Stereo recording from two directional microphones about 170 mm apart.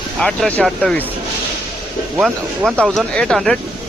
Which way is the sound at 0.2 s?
5° left (ahead or behind).